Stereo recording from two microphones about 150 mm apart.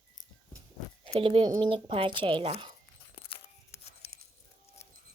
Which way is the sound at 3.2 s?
40° left (ahead or behind).